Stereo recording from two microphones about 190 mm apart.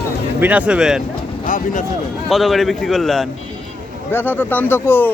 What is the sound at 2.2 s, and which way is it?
A man's voice, centre (ahead or behind).